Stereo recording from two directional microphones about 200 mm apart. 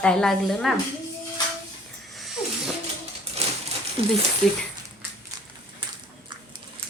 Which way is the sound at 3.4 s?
30° right (ahead or behind).